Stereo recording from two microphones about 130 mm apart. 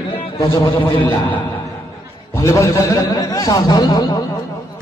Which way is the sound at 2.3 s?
25° left (ahead or behind).